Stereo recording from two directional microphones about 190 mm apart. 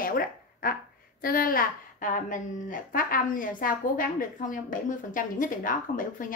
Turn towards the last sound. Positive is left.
turn(degrees=45)  # may be behind; listen again after turning